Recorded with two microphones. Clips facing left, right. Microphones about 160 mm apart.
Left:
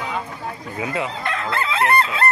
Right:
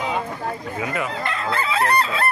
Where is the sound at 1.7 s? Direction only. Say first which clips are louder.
Left 1 dB; 20° left (ahead or behind).